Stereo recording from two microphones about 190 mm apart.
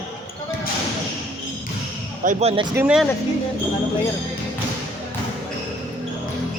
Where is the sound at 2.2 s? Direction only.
35° right (ahead or behind).